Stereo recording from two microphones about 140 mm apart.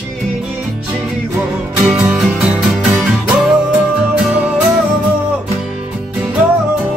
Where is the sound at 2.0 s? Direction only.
5° right (ahead or behind).